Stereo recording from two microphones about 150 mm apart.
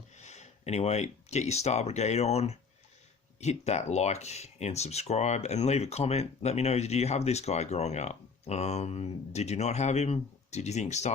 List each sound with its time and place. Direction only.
0.2 s speech: 50° left (ahead or behind)